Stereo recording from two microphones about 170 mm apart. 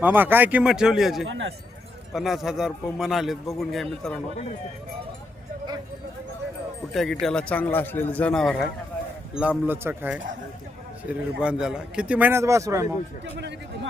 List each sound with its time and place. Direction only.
0.0 s a man's voice: 10° right (ahead or behind)
1.2 s speech: 85° right
2.1 s a man's voice: centre (ahead or behind)
6.9 s a man's voice: centre (ahead or behind); by 13.3 s 20° right (ahead or behind)